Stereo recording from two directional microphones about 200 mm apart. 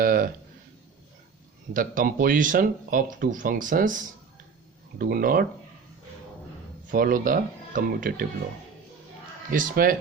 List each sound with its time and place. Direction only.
0.0 s a sound: 45° right (ahead or behind)
1.7 s speech: 45° right (ahead or behind)
6.9 s speech: 45° right (ahead or behind)
9.5 s speech: 45° right (ahead or behind)